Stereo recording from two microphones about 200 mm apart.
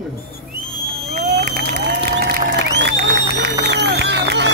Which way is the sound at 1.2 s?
50° right (ahead or behind).